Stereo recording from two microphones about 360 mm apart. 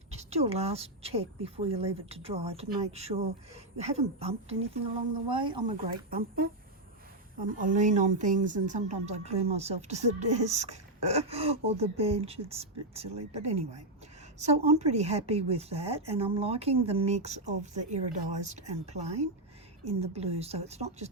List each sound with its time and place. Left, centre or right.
0.1 s a woman's voice: centre
6.1 s speech: right
7.6 s a woman's voice: right